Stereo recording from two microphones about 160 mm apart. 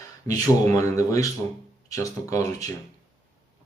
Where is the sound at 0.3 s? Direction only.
20° left (ahead or behind).